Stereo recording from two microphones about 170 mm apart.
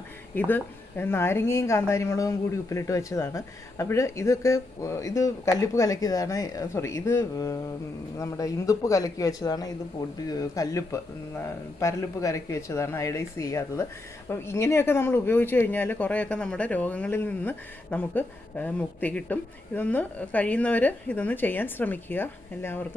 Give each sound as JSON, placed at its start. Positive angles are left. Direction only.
{"t": 0.3, "sound": "speech", "side_deg": 10}